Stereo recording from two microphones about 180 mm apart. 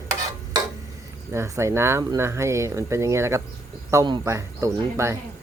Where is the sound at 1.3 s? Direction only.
15° right (ahead or behind).